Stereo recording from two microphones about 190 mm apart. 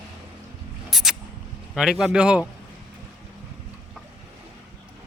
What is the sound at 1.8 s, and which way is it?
Speech, centre (ahead or behind).